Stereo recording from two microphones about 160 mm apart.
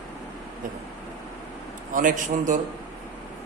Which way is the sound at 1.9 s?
55° right (ahead or behind).